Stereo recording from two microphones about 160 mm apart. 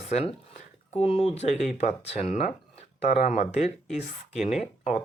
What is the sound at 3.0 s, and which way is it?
Speech, 40° left (ahead or behind).